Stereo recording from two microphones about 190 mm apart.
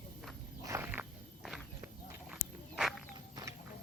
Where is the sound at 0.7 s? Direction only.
10° right (ahead or behind).